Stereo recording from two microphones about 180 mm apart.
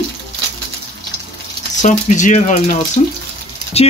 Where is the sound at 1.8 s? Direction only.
40° left (ahead or behind).